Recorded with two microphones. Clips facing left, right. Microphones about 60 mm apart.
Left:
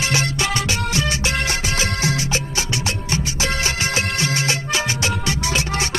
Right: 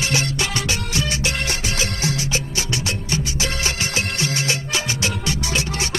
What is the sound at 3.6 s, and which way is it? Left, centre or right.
Music, left.